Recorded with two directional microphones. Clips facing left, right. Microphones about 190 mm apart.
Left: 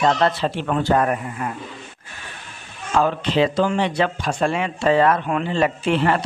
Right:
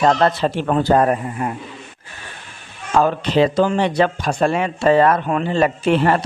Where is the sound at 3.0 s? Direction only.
45° right (ahead or behind).